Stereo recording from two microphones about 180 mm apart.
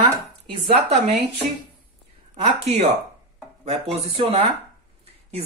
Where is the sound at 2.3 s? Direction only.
35° right (ahead or behind).